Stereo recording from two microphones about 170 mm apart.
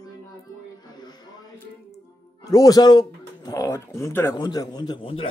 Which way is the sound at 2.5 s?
20° left (ahead or behind).